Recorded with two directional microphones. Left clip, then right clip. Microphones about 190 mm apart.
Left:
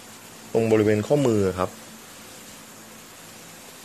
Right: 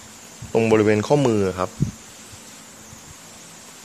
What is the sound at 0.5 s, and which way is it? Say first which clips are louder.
Speech: right 3 dB; 25° right (ahead or behind).